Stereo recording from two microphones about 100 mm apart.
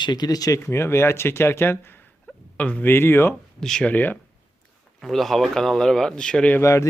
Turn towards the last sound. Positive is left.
turn(degrees=30)  # may be behind; listen again after turning